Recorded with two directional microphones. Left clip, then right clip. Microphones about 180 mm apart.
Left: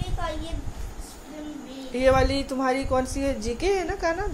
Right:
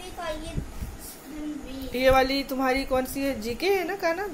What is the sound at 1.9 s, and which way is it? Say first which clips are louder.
A woman's voice: even; 5° left (ahead or behind).